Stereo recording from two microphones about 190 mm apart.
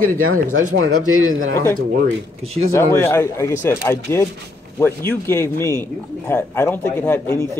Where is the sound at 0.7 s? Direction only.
90° right.